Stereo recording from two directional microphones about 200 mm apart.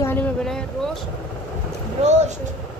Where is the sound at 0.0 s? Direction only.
10° left (ahead or behind).